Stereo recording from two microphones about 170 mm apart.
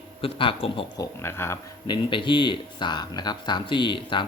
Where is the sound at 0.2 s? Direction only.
30° left (ahead or behind).